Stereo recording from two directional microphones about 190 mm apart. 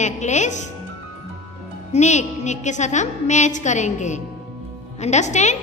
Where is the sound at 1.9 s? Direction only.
40° left (ahead or behind).